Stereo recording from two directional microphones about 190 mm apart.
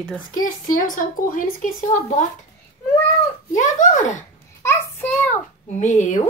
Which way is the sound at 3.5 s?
40° left (ahead or behind).